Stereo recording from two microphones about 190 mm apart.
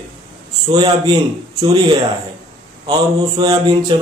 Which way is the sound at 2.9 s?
20° right (ahead or behind).